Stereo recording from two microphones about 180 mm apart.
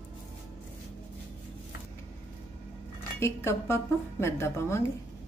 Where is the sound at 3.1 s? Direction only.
15° left (ahead or behind).